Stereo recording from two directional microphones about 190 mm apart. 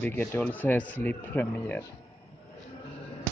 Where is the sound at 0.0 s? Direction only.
10° left (ahead or behind).